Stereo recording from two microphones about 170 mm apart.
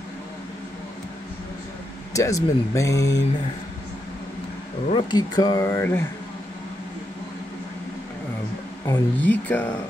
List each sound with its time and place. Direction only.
2.1 s speech: 20° left (ahead or behind)
4.9 s speech: 25° left (ahead or behind)
8.8 s speech: 15° left (ahead or behind)